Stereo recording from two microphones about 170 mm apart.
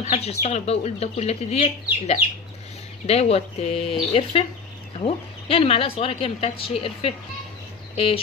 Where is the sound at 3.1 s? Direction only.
35° left (ahead or behind).